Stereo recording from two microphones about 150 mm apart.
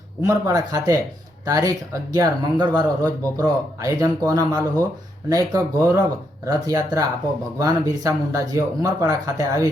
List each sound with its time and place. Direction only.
0.2 s a man's voice: 25° right (ahead or behind)